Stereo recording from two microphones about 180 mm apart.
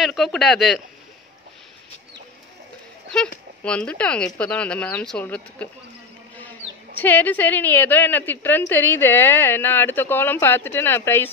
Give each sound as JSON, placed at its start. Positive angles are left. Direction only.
{"t": 0.0, "sound": "speech", "side_deg": 0}
{"t": 3.6, "sound": "a woman's voice", "side_deg": 5}
{"t": 7.0, "sound": "a woman's voice", "side_deg": 10}